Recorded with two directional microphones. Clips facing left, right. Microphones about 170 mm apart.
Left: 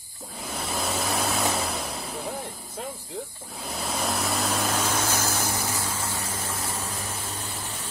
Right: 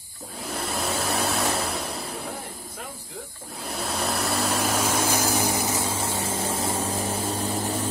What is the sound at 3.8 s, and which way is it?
Vehicle, centre (ahead or behind).